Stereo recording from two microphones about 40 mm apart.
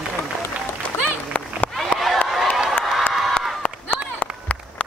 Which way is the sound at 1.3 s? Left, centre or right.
Left.